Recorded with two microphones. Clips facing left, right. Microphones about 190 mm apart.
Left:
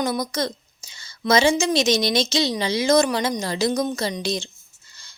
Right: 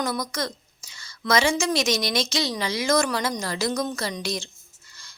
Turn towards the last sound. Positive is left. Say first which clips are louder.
# left 4 dB
turn(degrees=20)  # may be behind; listen again after turning